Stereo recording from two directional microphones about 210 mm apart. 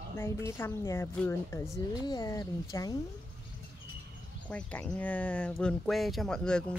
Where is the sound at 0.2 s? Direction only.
10° left (ahead or behind).